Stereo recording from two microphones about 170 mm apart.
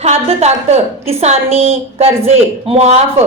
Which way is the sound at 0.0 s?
40° right (ahead or behind).